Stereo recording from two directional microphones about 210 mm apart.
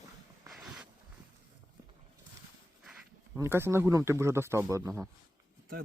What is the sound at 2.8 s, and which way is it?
Speech, 10° right (ahead or behind).